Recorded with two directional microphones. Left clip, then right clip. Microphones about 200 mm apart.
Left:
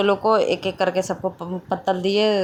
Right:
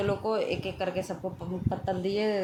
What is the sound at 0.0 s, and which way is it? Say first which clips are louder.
Speech: left 11 dB; 30° left (ahead or behind).